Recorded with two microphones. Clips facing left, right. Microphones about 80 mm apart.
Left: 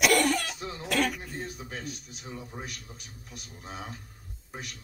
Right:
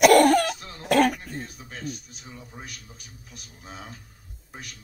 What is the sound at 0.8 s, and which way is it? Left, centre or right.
Music, right.